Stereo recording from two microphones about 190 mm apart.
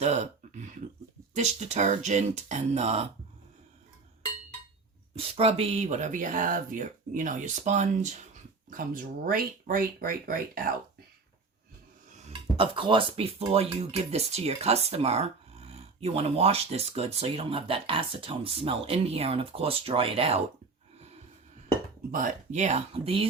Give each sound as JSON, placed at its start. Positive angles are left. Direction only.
{"t": 0.0, "sound": "a sound", "side_deg": -35}
{"t": 1.4, "sound": "speech", "side_deg": -35}
{"t": 5.1, "sound": "speech", "side_deg": -30}
{"t": 12.3, "sound": "speech", "side_deg": -25}
{"t": 22.1, "sound": "speech", "side_deg": -40}